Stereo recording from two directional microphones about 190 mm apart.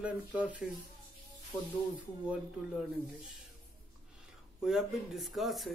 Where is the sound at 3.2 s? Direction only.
Centre (ahead or behind).